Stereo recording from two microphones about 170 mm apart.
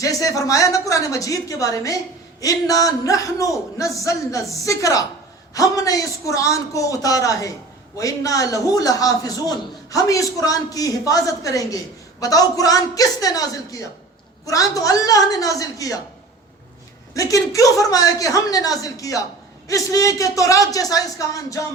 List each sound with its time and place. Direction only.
0.0 s a man's voice: 20° left (ahead or behind)
17.2 s a man's voice: 20° left (ahead or behind)